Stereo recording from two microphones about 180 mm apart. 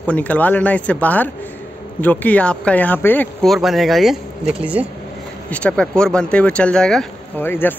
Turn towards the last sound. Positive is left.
turn(degrees=10)  # may be behind; listen again after turning